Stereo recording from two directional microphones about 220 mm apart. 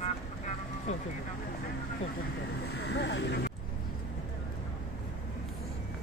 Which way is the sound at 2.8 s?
50° left (ahead or behind).